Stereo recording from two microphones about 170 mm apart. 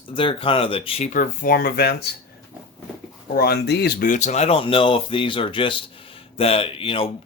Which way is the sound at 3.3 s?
70° left (ahead or behind).